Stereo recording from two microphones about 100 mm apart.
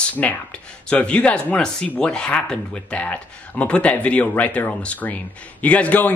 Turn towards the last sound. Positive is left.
turn(degrees=15)  # may be behind; listen again after turning